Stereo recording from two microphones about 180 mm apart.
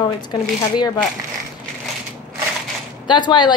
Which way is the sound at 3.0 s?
25° left (ahead or behind).